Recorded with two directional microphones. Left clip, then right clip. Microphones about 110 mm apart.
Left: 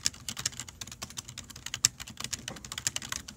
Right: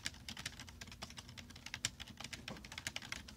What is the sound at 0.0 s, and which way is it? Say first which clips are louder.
Typing: left 12 dB; 10° left (ahead or behind).